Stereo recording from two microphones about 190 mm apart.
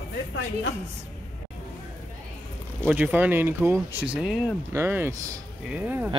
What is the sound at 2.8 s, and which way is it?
Speech, 10° right (ahead or behind).